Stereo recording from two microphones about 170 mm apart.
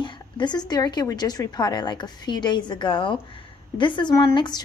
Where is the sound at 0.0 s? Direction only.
25° left (ahead or behind).